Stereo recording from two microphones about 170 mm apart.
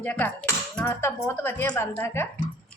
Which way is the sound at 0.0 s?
10° left (ahead or behind).